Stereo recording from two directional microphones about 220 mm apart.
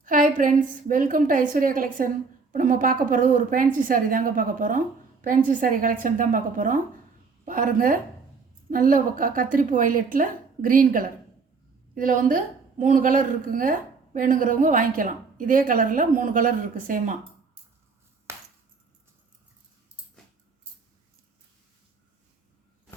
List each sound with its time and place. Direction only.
0.0 s a woman's voice: 35° right (ahead or behind)